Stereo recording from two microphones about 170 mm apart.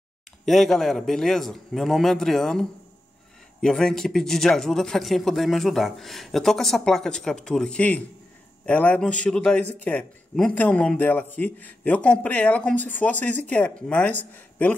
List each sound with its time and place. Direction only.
0.5 s speech: centre (ahead or behind)
3.6 s speech: 5° left (ahead or behind)